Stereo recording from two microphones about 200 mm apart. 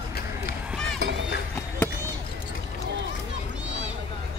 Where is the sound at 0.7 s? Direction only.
Centre (ahead or behind).